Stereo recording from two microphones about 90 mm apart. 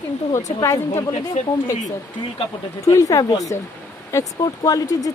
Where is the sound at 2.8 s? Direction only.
40° left (ahead or behind).